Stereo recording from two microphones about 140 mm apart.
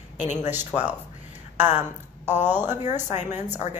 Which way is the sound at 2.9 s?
55° left (ahead or behind).